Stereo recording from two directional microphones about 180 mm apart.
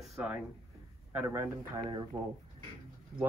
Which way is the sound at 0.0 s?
5° right (ahead or behind).